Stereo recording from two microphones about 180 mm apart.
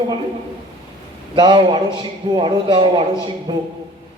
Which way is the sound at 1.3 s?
25° right (ahead or behind).